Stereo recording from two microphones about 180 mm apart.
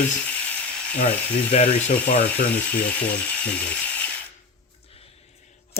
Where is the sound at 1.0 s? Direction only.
40° left (ahead or behind).